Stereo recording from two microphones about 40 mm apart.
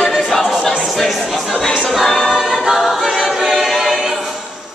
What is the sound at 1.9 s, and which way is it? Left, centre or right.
A capella, centre.